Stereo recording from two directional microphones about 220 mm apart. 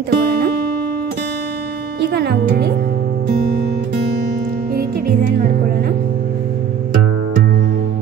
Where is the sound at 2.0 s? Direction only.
50° right (ahead or behind).